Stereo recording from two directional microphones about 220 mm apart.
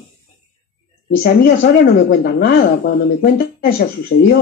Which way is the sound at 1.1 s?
45° left (ahead or behind).